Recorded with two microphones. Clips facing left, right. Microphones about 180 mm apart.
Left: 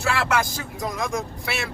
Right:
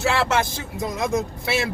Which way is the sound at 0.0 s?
25° right (ahead or behind).